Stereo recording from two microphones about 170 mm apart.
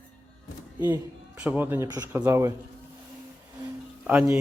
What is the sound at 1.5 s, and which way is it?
Speech, 10° right (ahead or behind).